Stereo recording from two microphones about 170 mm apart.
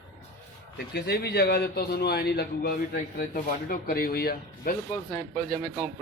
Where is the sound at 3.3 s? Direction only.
60° left (ahead or behind).